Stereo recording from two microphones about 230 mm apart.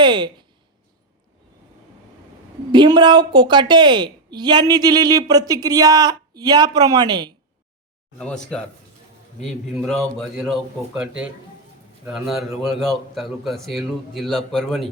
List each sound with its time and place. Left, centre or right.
0.0 s a sound: centre
2.7 s a woman's voice: centre
8.2 s a man's voice: centre